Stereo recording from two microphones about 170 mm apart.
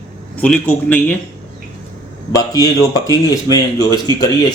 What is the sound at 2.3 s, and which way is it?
Speech, 20° left (ahead or behind).